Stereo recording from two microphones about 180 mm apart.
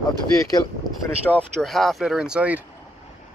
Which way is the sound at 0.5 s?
20° left (ahead or behind).